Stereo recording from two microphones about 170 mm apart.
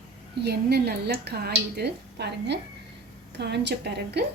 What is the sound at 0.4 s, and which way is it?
A woman's voice, 70° right (ahead or behind).